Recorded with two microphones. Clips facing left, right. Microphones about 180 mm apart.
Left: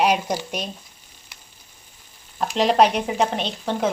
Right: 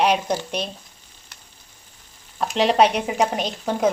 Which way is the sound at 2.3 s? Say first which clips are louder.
Even; centre (ahead or behind).